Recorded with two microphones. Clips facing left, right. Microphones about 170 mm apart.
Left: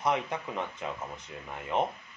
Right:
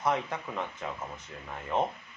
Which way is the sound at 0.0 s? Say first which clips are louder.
Even; 15° left (ahead or behind).